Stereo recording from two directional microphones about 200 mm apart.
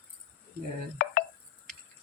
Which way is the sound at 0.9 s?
40° left (ahead or behind).